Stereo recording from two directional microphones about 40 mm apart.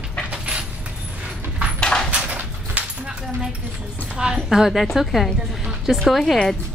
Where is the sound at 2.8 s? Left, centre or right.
Right.